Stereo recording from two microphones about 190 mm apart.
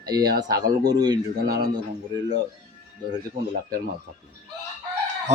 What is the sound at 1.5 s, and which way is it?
Speech, 55° right (ahead or behind).